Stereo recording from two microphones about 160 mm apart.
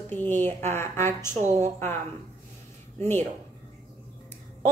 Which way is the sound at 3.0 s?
15° left (ahead or behind).